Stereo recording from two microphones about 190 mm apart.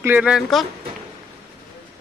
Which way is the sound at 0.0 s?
5° right (ahead or behind).